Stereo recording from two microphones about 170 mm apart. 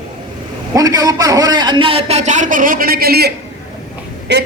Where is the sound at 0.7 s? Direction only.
20° right (ahead or behind); by 3.3 s 65° right (ahead or behind).